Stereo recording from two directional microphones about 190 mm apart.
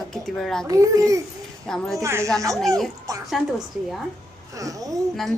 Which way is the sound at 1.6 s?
5° left (ahead or behind).